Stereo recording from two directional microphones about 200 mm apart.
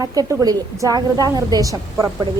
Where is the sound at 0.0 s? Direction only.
20° right (ahead or behind).